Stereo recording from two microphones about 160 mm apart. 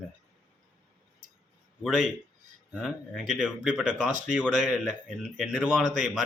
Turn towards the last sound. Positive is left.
turn(degrees=-5)  # may be behind; listen again after turning